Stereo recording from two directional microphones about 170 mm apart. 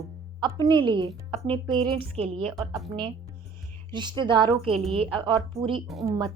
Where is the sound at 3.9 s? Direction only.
25° right (ahead or behind).